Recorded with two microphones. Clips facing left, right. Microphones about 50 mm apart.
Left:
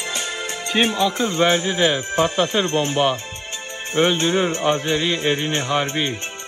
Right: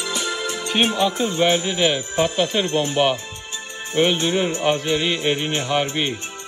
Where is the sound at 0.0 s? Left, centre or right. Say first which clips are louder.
Right 2 dB; left.